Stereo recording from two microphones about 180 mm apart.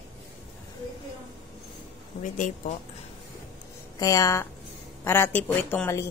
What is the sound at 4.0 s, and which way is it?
A woman's voice, 20° left (ahead or behind).